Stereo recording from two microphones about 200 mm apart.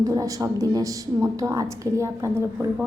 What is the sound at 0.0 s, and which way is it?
A woman's voice, 15° right (ahead or behind).